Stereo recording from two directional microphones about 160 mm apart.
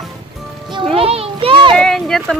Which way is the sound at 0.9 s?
35° right (ahead or behind).